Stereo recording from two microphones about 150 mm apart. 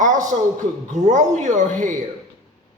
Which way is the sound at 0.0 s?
60° right (ahead or behind).